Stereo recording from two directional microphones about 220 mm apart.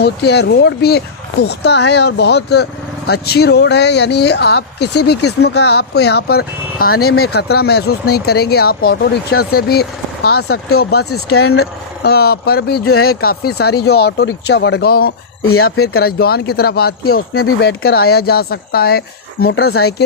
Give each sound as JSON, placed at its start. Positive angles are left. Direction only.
{"t": 0.0, "sound": "speech", "side_deg": 50}
{"t": 11.3, "sound": "speech", "side_deg": 75}
{"t": 12.0, "sound": "speech", "side_deg": 45}
{"t": 12.8, "sound": "speech", "side_deg": 80}
{"t": 13.2, "sound": "speech", "side_deg": 45}
{"t": 15.4, "sound": "speech", "side_deg": 75}
{"t": 16.0, "sound": "speech", "side_deg": 45}